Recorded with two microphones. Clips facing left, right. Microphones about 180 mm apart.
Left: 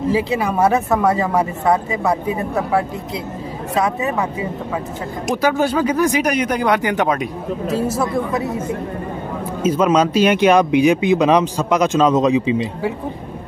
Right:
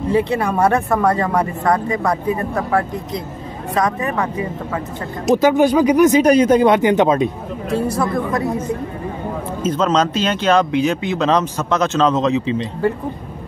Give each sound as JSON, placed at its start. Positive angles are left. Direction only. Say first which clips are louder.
{"t": 0.1, "sound": "speech", "louder": "right 4 dB", "side_deg": 5}
{"t": 5.3, "sound": "speech", "louder": "right 5 dB", "side_deg": -20}
{"t": 7.9, "sound": "speech", "louder": "even", "side_deg": 5}
{"t": 9.6, "sound": "speech", "louder": "left 2 dB", "side_deg": 10}